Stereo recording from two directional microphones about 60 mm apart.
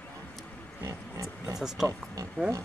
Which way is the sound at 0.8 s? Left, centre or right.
Right.